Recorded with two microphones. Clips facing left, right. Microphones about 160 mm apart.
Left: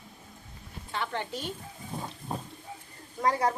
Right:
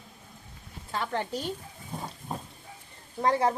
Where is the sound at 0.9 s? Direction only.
40° right (ahead or behind).